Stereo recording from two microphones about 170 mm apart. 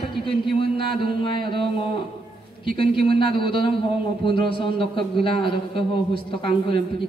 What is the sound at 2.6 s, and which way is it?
Speech, 60° right (ahead or behind).